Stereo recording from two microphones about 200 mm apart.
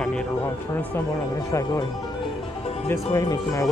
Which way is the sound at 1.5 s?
15° left (ahead or behind).